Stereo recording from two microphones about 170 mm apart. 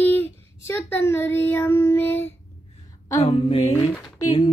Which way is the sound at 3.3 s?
35° left (ahead or behind).